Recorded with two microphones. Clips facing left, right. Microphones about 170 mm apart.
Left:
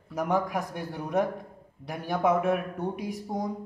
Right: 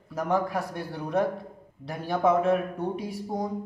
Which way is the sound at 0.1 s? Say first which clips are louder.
Right 1 dB; 15° left (ahead or behind).